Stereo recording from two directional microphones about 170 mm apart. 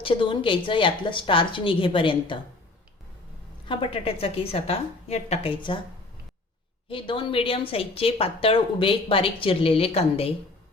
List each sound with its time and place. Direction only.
0.0 s a woman's voice: 30° left (ahead or behind)
3.7 s a woman's voice: 35° left (ahead or behind)
6.8 s a woman's voice: 30° left (ahead or behind)